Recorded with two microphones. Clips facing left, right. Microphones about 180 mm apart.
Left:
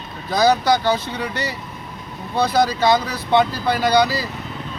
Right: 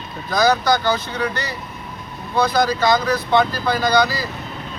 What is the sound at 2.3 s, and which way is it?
Speech, 30° left (ahead or behind).